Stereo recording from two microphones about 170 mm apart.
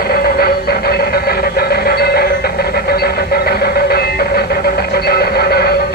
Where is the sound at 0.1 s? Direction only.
65° left (ahead or behind).